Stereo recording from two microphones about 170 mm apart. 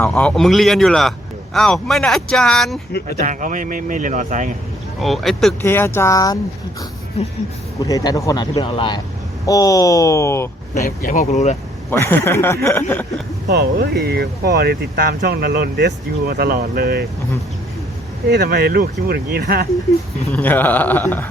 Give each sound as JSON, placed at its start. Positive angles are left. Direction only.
{"t": 0.1, "sound": "speech", "side_deg": 5}
{"t": 3.2, "sound": "speech", "side_deg": -50}
{"t": 4.9, "sound": "speech", "side_deg": 0}
{"t": 5.6, "sound": "a man's voice", "side_deg": 15}
{"t": 7.8, "sound": "speech", "side_deg": 20}
{"t": 10.8, "sound": "speech", "side_deg": 55}
{"t": 11.9, "sound": "a man's voice", "side_deg": 10}
{"t": 13.9, "sound": "speech", "side_deg": -65}
{"t": 18.3, "sound": "speech", "side_deg": -70}
{"t": 20.3, "sound": "a man's voice", "side_deg": 10}